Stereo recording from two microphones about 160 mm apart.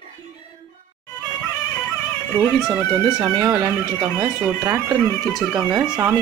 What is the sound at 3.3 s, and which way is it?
Speech, 20° right (ahead or behind).